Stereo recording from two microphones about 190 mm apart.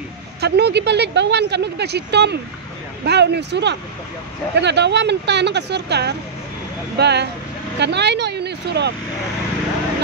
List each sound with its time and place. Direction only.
0.4 s speech: 60° right (ahead or behind)